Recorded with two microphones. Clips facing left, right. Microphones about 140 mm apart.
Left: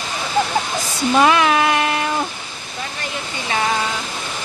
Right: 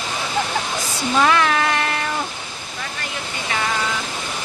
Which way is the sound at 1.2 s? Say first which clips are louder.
Left 3 dB; 15° left (ahead or behind).